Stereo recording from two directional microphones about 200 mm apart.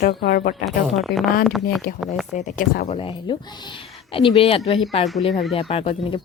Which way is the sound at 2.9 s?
25° left (ahead or behind).